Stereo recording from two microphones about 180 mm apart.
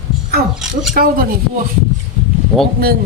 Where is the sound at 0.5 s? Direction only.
5° right (ahead or behind).